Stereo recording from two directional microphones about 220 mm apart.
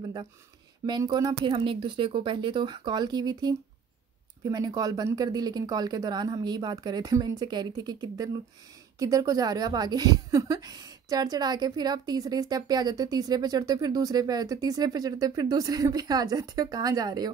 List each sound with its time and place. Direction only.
0.8 s a woman's voice: 20° right (ahead or behind)